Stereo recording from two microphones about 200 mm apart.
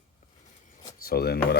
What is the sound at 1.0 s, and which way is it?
Speech, 50° left (ahead or behind).